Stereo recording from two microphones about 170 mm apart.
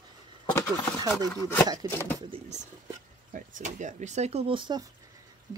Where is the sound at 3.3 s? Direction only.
50° right (ahead or behind).